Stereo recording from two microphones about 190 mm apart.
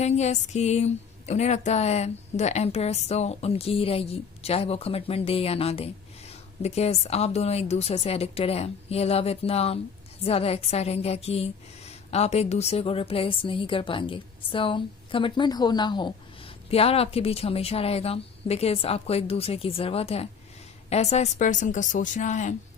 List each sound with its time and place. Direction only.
0.0 s a woman's voice: 35° left (ahead or behind)